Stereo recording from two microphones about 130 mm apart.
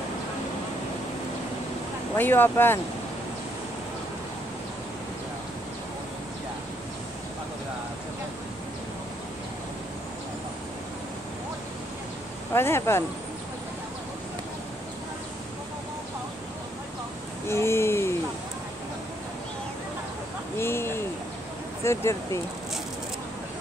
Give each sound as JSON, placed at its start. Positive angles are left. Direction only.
{"t": 2.1, "sound": "speech", "side_deg": 15}
{"t": 12.5, "sound": "speech", "side_deg": 20}
{"t": 17.5, "sound": "speech", "side_deg": 20}
{"t": 20.5, "sound": "a sound", "side_deg": 20}
{"t": 21.8, "sound": "speech", "side_deg": 20}